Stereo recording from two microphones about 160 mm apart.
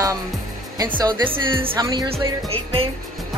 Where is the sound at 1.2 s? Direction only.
35° right (ahead or behind).